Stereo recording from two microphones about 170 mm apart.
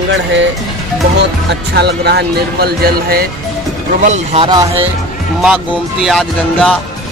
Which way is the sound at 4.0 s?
45° right (ahead or behind).